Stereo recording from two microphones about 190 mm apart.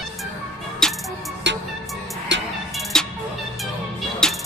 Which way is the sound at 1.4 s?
70° right (ahead or behind).